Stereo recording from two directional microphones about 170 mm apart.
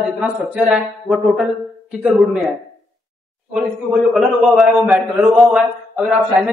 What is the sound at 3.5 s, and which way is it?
A man's voice, centre (ahead or behind).